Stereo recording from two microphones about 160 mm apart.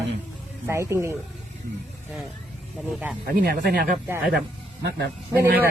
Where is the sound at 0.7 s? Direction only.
15° right (ahead or behind).